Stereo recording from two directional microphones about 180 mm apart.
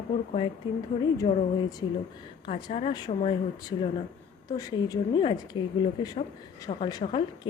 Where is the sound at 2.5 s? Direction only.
35° left (ahead or behind).